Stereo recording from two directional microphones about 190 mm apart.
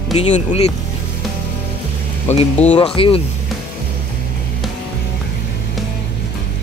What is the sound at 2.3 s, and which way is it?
Speech, 35° left (ahead or behind).